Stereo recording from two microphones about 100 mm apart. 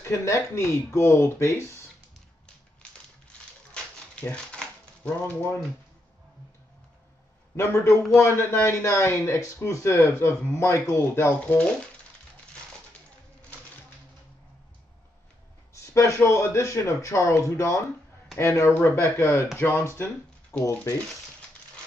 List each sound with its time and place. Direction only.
0.0 s speech: 30° left (ahead or behind)
3.7 s a sound: 10° left (ahead or behind)
5.2 s speech: 20° left (ahead or behind)
7.5 s speech: 25° left (ahead or behind)
15.7 s speech: 30° left (ahead or behind)